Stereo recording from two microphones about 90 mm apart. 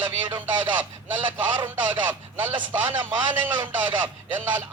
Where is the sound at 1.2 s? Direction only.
60° right (ahead or behind).